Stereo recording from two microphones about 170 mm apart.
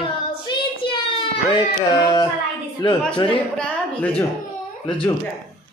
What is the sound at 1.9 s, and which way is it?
Speech, 25° left (ahead or behind).